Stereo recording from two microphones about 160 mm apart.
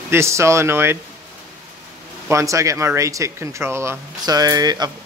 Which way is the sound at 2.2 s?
20° right (ahead or behind).